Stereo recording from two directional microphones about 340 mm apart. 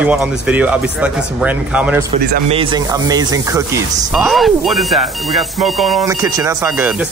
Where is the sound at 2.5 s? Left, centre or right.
Centre.